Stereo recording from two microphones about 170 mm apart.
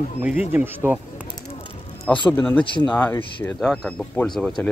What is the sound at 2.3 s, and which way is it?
Speech, 10° left (ahead or behind).